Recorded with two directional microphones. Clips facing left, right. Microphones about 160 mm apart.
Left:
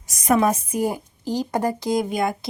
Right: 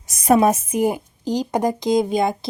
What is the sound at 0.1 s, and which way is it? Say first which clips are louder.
A woman's voice: right 3 dB; 25° right (ahead or behind).